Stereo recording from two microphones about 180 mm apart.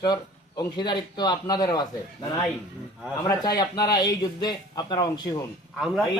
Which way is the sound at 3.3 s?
20° left (ahead or behind).